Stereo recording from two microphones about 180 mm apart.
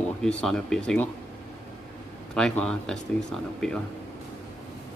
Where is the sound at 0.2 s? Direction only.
5° left (ahead or behind).